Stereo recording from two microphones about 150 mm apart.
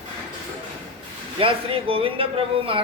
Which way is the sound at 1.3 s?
35° right (ahead or behind).